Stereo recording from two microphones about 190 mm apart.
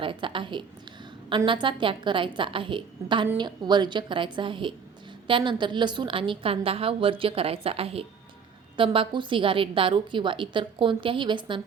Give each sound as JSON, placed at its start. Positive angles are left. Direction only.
{"t": 0.0, "sound": "a woman's voice", "side_deg": -25}